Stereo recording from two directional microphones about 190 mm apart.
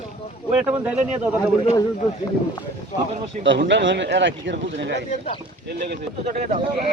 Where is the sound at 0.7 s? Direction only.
5° right (ahead or behind).